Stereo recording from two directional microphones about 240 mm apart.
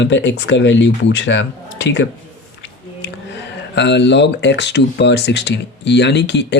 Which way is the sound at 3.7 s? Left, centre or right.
Left.